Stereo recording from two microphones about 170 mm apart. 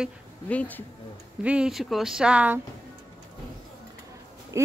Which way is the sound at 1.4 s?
5° right (ahead or behind).